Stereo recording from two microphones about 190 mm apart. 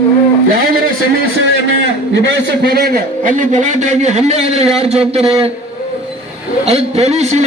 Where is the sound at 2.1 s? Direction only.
70° right (ahead or behind); by 5.5 s 30° right (ahead or behind).